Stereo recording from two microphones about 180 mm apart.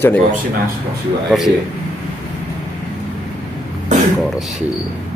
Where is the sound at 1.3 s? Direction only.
5° right (ahead or behind).